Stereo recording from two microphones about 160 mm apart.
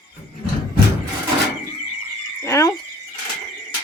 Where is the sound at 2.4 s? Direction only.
20° left (ahead or behind).